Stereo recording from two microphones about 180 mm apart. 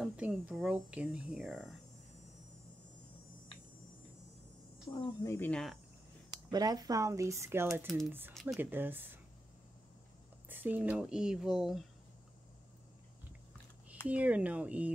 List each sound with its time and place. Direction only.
0.0 s speech: 5° right (ahead or behind)
4.9 s speech: 15° left (ahead or behind)
6.5 s speech: 20° right (ahead or behind)
7.8 s speech: centre (ahead or behind)
10.5 s speech: 10° right (ahead or behind)
14.0 s speech: 10° right (ahead or behind)